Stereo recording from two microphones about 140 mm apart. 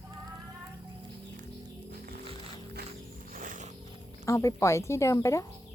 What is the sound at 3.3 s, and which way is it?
Wild animals, 75° right (ahead or behind).